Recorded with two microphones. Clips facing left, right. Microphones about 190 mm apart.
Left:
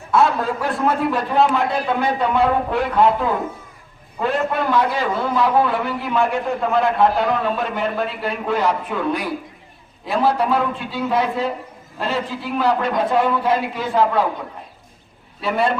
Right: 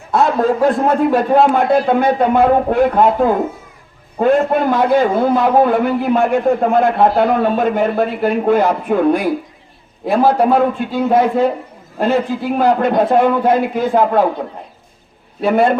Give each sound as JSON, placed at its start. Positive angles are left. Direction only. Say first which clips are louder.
{"t": 0.1, "sound": "a man's voice", "louder": "right 4 dB", "side_deg": -50}
{"t": 15.4, "sound": "a man's voice", "louder": "right 7 dB", "side_deg": -50}